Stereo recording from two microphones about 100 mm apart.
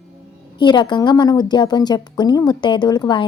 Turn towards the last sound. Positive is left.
turn(degrees=45)  # may be behind; listen again after turning